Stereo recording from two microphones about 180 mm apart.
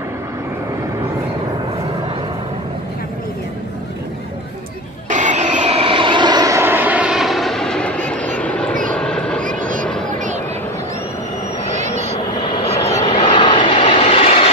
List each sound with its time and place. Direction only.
5.1 s vehicle: 40° right (ahead or behind); by 9.4 s 5° left (ahead or behind)
9.4 s vehicle: 45° right (ahead or behind)
10.1 s a sound: 45° right (ahead or behind)
12.4 s vehicle: 35° left (ahead or behind)